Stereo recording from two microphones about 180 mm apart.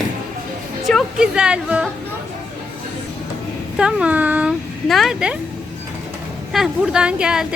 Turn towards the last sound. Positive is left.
turn(degrees=-5)  # may be behind; listen again after turning